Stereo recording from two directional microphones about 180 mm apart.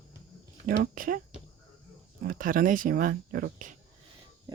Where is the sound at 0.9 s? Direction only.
50° right (ahead or behind).